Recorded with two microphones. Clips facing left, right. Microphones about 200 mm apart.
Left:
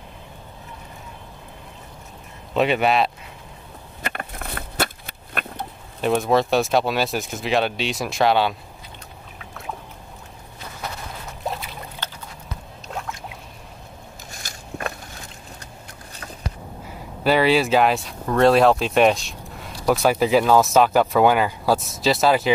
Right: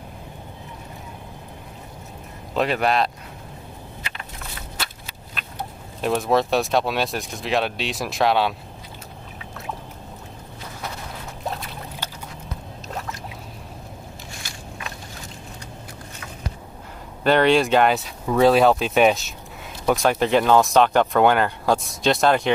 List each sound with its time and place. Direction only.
2.5 s speech: centre (ahead or behind)
4.0 s a sound: 55° left (ahead or behind)
5.9 s speech: centre (ahead or behind)
11.4 s boat: centre (ahead or behind)
12.0 s a sound: 10° right (ahead or behind)
12.8 s boat: centre (ahead or behind)
17.2 s speech: 5° left (ahead or behind)